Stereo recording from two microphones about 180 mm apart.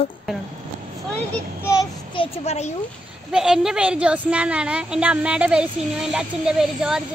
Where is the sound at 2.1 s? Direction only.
30° left (ahead or behind).